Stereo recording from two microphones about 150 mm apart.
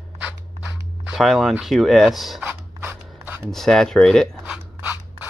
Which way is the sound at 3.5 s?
Centre (ahead or behind).